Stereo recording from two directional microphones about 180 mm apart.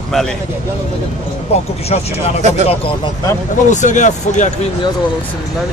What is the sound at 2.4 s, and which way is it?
Speech, 40° right (ahead or behind).